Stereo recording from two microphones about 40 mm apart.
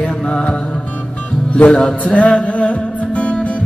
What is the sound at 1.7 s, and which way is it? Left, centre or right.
Music, centre.